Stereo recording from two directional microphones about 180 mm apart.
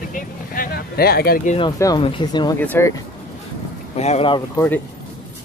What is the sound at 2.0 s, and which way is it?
Speech, 25° left (ahead or behind).